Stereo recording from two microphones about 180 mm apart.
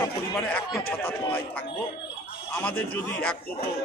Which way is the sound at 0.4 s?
5° left (ahead or behind).